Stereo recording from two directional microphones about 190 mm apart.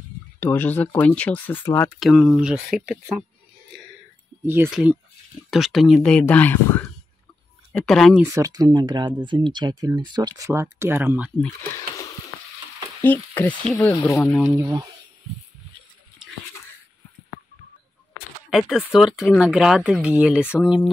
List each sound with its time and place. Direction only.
0.4 s speech: 10° left (ahead or behind)
2.0 s speech: centre (ahead or behind)
4.5 s speech: 5° right (ahead or behind)
8.2 s speech: 20° right (ahead or behind)
13.0 s speech: 10° left (ahead or behind)
14.4 s speech: 15° right (ahead or behind)
18.5 s speech: centre (ahead or behind)